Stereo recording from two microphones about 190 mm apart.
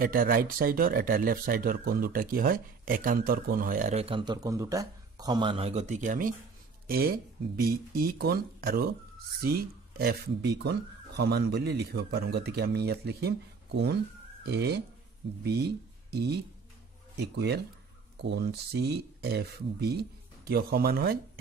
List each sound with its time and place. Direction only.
0.0 s speech: 50° right (ahead or behind)
3.9 s a man's voice: 30° right (ahead or behind); by 21.2 s 55° right (ahead or behind)